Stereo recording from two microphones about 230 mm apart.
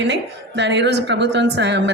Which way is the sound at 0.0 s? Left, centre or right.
Right.